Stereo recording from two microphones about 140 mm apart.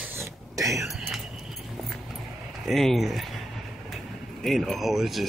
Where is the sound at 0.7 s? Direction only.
5° right (ahead or behind).